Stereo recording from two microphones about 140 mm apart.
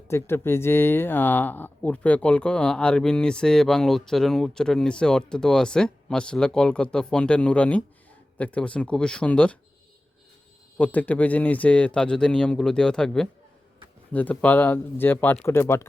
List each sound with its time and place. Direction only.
0.1 s speech: 15° left (ahead or behind)
10.8 s speech: 10° left (ahead or behind)